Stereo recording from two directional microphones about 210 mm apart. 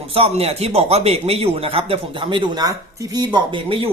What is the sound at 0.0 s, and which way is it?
A man's voice, 25° right (ahead or behind).